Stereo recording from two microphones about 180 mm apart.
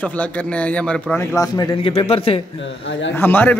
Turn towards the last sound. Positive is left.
turn(degrees=10)  # may be behind; listen again after turning